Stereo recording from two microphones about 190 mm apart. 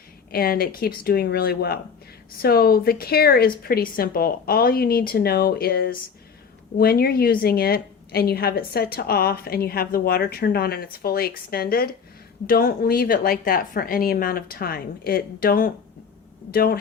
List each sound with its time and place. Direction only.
0.3 s a woman's voice: 55° left (ahead or behind)